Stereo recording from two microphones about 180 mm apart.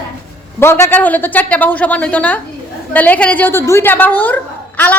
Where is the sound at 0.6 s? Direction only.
15° left (ahead or behind).